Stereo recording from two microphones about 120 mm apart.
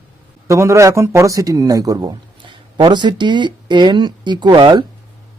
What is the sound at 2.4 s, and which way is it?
Speech, 40° right (ahead or behind).